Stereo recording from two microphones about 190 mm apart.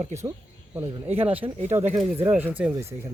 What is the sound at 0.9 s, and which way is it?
Speech, 30° right (ahead or behind).